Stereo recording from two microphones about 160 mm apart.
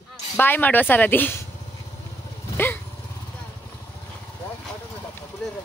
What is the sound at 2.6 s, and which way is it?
Vehicle, 15° left (ahead or behind).